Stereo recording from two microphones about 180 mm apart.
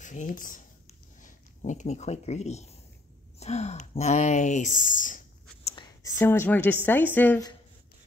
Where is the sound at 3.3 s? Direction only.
35° left (ahead or behind).